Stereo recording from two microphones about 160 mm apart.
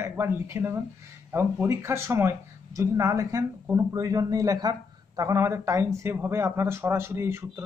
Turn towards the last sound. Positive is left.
turn(degrees=-15)  # may be behind; listen again after turning